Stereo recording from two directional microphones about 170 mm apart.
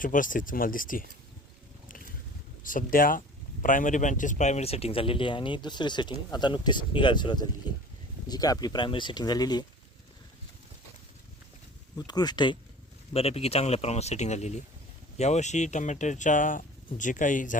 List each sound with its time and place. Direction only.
0.0 s speech: 50° left (ahead or behind)
2.6 s speech: 55° left (ahead or behind); by 9.6 s 25° left (ahead or behind)
11.9 s speech: 25° left (ahead or behind)
13.1 s speech: 35° left (ahead or behind)